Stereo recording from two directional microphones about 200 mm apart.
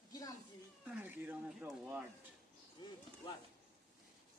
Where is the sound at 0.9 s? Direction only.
10° right (ahead or behind).